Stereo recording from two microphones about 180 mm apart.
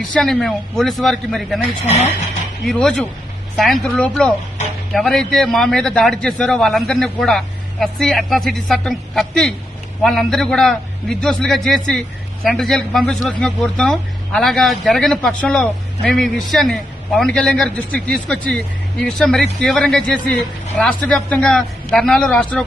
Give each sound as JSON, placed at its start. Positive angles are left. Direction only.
{"t": 0.0, "sound": "a man's voice", "side_deg": 0}
{"t": 2.6, "sound": "a man's voice", "side_deg": 5}